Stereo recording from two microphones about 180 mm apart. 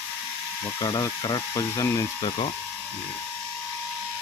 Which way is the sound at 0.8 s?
20° left (ahead or behind).